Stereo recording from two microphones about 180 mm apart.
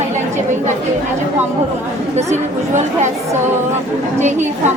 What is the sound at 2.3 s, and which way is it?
Speech, 40° right (ahead or behind).